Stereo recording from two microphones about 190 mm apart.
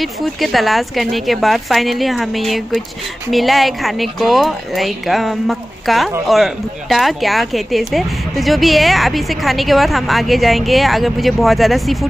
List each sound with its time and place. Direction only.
0.0 s a woman's voice: centre (ahead or behind)